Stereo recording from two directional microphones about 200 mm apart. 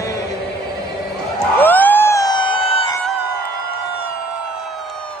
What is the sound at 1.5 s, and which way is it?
Music, 10° left (ahead or behind).